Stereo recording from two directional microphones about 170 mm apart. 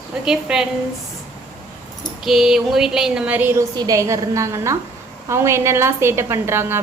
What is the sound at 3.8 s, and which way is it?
A woman's voice, 20° right (ahead or behind).